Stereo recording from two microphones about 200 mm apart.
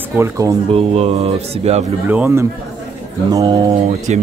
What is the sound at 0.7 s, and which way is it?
Speech, 30° right (ahead or behind).